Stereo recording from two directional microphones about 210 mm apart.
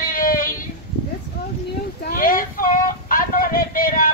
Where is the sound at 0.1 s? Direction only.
40° left (ahead or behind).